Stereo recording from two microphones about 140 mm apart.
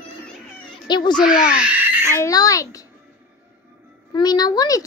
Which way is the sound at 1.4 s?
65° left (ahead or behind).